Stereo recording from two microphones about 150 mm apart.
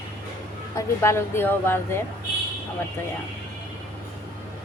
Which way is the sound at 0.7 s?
20° left (ahead or behind).